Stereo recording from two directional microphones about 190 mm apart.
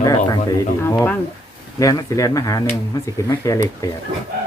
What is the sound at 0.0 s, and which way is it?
Speech, 20° left (ahead or behind).